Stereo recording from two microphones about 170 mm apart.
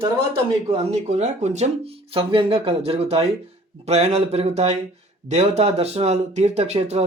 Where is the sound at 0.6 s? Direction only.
35° right (ahead or behind).